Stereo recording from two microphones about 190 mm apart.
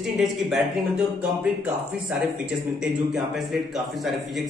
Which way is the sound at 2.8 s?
Centre (ahead or behind).